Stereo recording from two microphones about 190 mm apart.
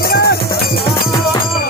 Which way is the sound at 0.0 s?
55° left (ahead or behind).